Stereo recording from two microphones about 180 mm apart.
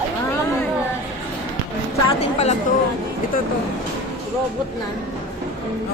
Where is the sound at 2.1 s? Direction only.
35° left (ahead or behind).